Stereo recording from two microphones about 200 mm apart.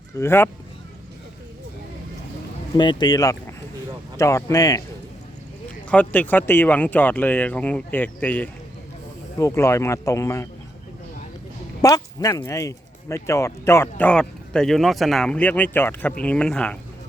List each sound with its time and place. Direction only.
0.2 s speech: 10° left (ahead or behind)
2.7 s speech: 20° left (ahead or behind)
5.6 s speech: 5° left (ahead or behind)
11.8 s speech: 20° left (ahead or behind)